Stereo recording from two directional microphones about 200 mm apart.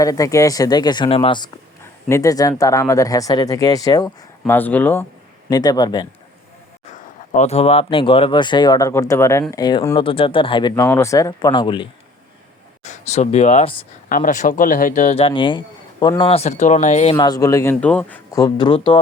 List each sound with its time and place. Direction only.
0.0 s speech: 15° left (ahead or behind)
1.8 s speech: 15° left (ahead or behind)
5.5 s speech: 20° left (ahead or behind)
7.3 s speech: 30° left (ahead or behind)
12.8 s speech: 35° left (ahead or behind); by 18.3 s 5° left (ahead or behind)
18.3 s speech: 20° left (ahead or behind)